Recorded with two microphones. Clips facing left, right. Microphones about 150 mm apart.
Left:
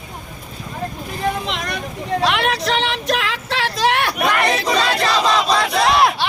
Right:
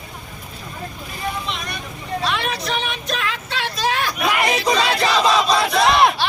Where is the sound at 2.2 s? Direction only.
85° left; by 4.3 s 65° left (ahead or behind).